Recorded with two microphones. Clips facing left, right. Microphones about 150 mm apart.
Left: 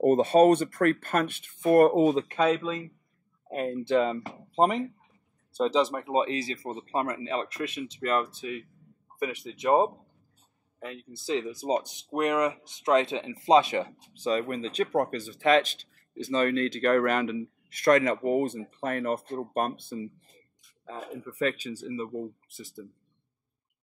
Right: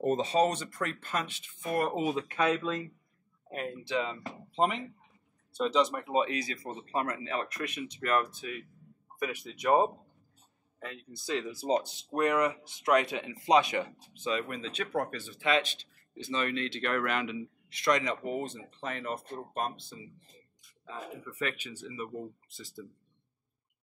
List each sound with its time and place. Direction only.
0.0 s speech: 55° left (ahead or behind)
2.0 s speech: 30° left (ahead or behind)
3.4 s speech: 40° left (ahead or behind); by 9.8 s 25° left (ahead or behind)
10.9 s speech: 25° left (ahead or behind)
14.1 s speech: 35° left (ahead or behind); by 20.1 s 55° left (ahead or behind)
21.4 s speech: 35° left (ahead or behind)